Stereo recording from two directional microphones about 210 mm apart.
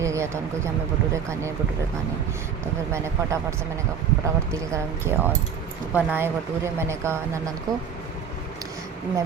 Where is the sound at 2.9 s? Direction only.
15° right (ahead or behind).